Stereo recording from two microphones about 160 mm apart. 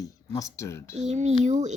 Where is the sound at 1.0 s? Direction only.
45° right (ahead or behind).